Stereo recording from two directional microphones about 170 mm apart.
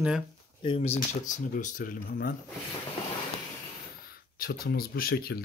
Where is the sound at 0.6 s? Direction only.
35° left (ahead or behind).